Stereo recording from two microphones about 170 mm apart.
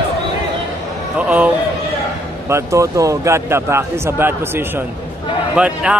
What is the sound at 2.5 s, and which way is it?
A man's voice, 15° right (ahead or behind).